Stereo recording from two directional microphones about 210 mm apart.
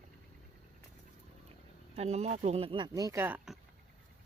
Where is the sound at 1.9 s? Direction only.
30° right (ahead or behind).